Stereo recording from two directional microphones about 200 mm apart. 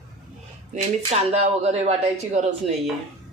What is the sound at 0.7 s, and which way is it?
Speech, 35° right (ahead or behind).